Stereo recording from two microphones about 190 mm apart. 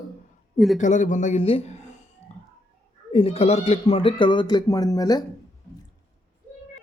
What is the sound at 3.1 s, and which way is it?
Speech, 30° left (ahead or behind).